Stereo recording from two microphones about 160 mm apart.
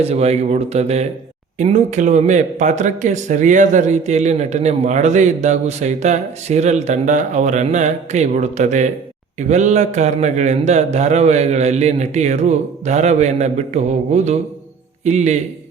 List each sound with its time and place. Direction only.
0.0 s speech: 40° right (ahead or behind)